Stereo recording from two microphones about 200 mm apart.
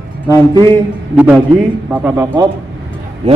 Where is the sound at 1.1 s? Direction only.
5° right (ahead or behind).